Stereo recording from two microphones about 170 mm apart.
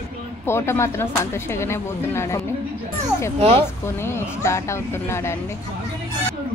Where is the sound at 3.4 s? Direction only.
35° right (ahead or behind).